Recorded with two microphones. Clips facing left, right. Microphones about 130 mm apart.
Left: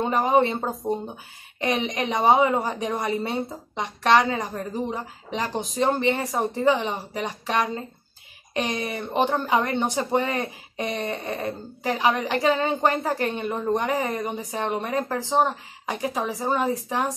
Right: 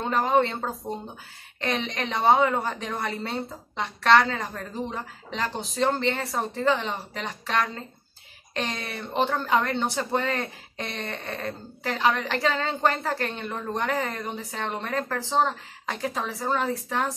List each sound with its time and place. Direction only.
0.0 s speech: 15° left (ahead or behind)